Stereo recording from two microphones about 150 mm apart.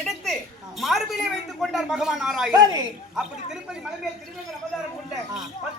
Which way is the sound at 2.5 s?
25° right (ahead or behind).